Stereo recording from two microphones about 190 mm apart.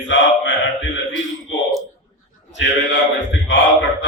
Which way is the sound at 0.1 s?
75° left (ahead or behind).